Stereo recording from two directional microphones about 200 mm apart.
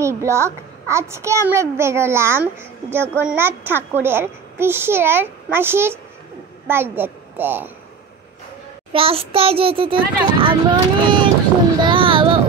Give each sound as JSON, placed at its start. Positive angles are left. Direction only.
{"t": 0.0, "sound": "a child's voice", "side_deg": -15}
{"t": 8.9, "sound": "a child's voice", "side_deg": -30}
{"t": 11.8, "sound": "a sound", "side_deg": -25}